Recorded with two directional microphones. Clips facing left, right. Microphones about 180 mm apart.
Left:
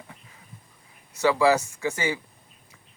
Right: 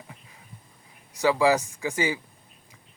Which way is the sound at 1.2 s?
15° right (ahead or behind).